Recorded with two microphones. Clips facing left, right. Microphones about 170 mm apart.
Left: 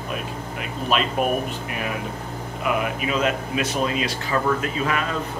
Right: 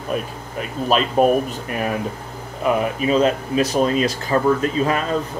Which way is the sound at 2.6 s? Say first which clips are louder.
Right 5 dB; 35° right (ahead or behind).